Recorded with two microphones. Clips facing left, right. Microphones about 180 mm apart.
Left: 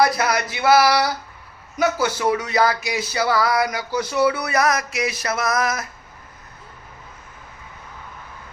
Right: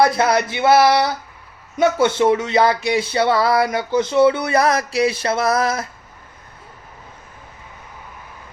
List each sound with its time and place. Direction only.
0.0 s speech: 25° right (ahead or behind)